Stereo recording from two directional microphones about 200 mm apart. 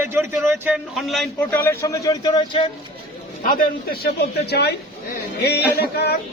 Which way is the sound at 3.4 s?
45° left (ahead or behind).